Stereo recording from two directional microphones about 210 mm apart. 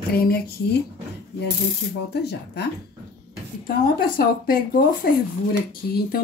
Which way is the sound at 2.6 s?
50° left (ahead or behind).